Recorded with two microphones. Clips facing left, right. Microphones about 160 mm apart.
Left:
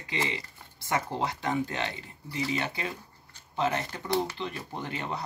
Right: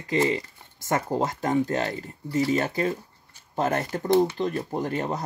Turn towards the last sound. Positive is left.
turn(degrees=-45)  # may be behind; listen again after turning